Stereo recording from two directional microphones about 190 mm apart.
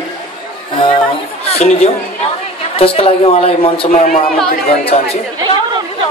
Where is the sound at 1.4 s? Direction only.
35° left (ahead or behind).